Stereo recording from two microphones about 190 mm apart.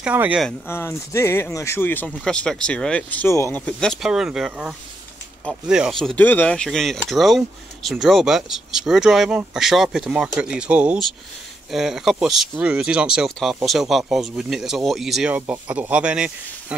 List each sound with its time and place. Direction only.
0.0 s speech: 5° right (ahead or behind)
0.5 s speech: 10° left (ahead or behind); by 16.7 s 5° right (ahead or behind)